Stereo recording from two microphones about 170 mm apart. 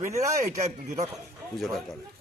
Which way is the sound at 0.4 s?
45° right (ahead or behind).